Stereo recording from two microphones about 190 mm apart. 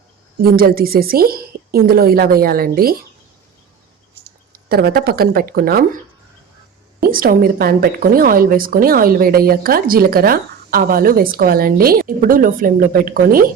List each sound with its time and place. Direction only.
0.3 s speech: 50° right (ahead or behind)
4.5 s speech: 50° right (ahead or behind)
7.1 s speech: 50° right (ahead or behind)